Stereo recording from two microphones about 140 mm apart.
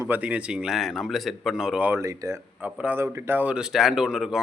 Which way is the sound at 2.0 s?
25° right (ahead or behind).